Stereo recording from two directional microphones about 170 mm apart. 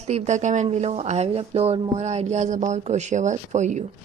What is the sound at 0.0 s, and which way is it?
Speech, 40° right (ahead or behind).